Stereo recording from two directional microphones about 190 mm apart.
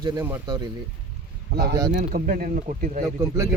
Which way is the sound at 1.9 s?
45° right (ahead or behind).